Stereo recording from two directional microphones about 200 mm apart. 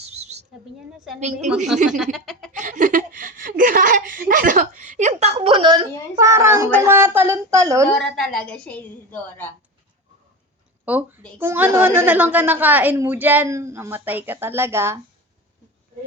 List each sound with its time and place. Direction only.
0.0 s a sound: 35° right (ahead or behind)
1.5 s a woman's voice: centre (ahead or behind)
2.5 s speech: 40° right (ahead or behind); by 7.9 s 15° right (ahead or behind)
7.9 s a woman's voice: centre (ahead or behind)
10.8 s a woman's voice: 10° right (ahead or behind)